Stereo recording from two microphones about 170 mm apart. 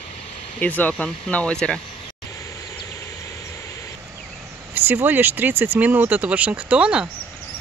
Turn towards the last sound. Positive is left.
turn(degrees=-5)  # may be behind; listen again after turning